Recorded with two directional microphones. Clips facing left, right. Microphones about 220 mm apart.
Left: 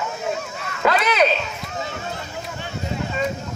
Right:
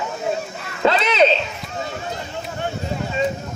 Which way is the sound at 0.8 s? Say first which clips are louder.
Right 2 dB; 25° right (ahead or behind).